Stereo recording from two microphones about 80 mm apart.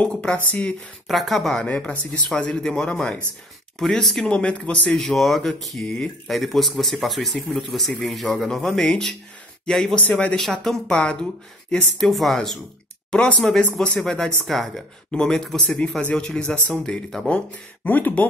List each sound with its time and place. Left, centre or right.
0.0 s speech: centre
1.0 s speech: centre
1.7 s speech: centre
17.8 s speech: left